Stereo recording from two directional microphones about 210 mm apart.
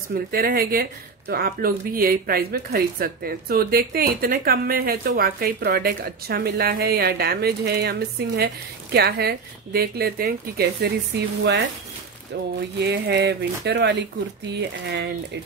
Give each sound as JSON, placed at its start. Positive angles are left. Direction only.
{"t": 0.3, "sound": "speech", "side_deg": -45}
{"t": 12.7, "sound": "speech", "side_deg": -50}